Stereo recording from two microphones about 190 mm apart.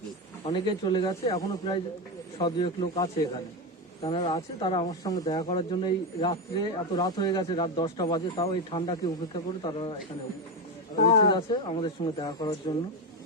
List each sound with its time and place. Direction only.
0.4 s speech: 25° left (ahead or behind)
10.9 s speech: 45° left (ahead or behind)
11.2 s speech: 25° left (ahead or behind)